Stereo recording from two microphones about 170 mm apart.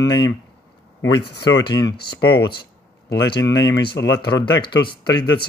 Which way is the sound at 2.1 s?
25° left (ahead or behind).